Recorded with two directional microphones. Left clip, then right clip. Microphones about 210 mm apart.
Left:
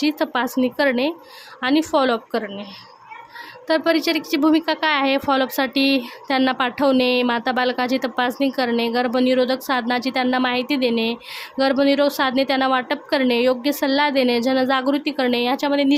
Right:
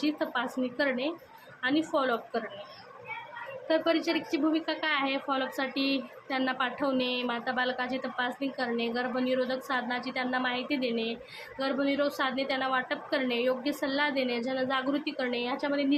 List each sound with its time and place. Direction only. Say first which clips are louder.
0.0 s speech: left 10 dB; 55° left (ahead or behind)
3.7 s a woman's voice: left 9 dB; 55° left (ahead or behind)